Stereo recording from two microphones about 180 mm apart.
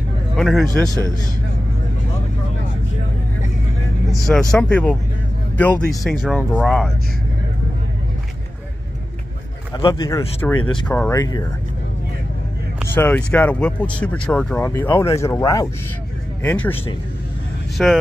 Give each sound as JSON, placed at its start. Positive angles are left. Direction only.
{"t": 0.4, "sound": "speech", "side_deg": 0}
{"t": 4.3, "sound": "speech", "side_deg": 5}
{"t": 6.0, "sound": "speech", "side_deg": 5}
{"t": 9.8, "sound": "speech", "side_deg": 20}
{"t": 12.9, "sound": "speech", "side_deg": 10}
{"t": 17.8, "sound": "speech", "side_deg": 5}